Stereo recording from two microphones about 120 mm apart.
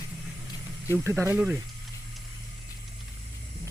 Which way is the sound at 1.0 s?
20° right (ahead or behind).